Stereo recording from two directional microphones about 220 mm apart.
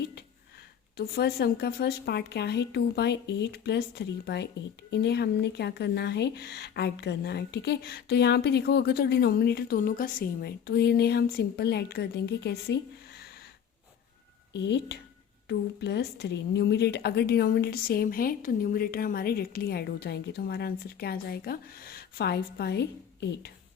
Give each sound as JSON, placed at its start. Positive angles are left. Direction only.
{"t": 0.9, "sound": "speech", "side_deg": 50}
{"t": 14.5, "sound": "speech", "side_deg": 50}